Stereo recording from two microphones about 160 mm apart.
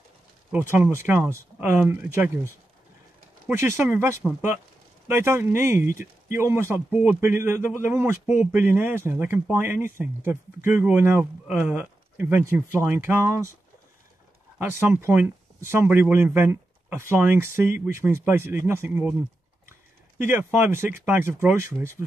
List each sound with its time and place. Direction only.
0.5 s speech: 10° right (ahead or behind)
14.6 s speech: 10° right (ahead or behind)
20.2 s speech: 15° right (ahead or behind)